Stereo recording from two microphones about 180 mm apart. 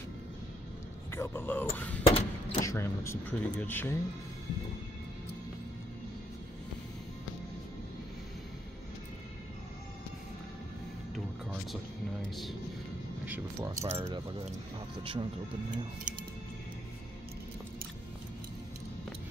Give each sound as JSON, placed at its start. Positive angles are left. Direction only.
{"t": 1.1, "sound": "speech", "side_deg": 15}
{"t": 2.0, "sound": "a sound", "side_deg": 35}
{"t": 2.6, "sound": "speech", "side_deg": 15}
{"t": 13.2, "sound": "speech", "side_deg": -10}
{"t": 16.1, "sound": "music", "side_deg": -45}